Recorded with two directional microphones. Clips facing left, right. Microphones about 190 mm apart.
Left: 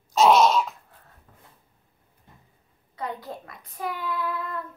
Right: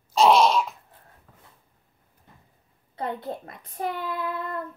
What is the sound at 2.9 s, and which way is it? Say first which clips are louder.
Speech: right 3 dB; 30° right (ahead or behind).